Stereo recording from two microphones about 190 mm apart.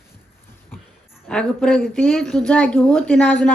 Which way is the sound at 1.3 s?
5° left (ahead or behind).